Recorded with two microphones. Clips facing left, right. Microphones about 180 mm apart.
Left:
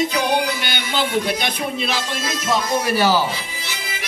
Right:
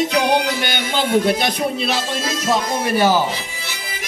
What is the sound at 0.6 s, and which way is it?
Speech, 50° right (ahead or behind).